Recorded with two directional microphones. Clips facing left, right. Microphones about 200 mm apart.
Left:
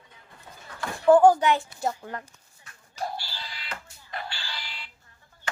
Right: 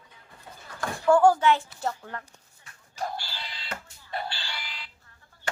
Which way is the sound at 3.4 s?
25° right (ahead or behind).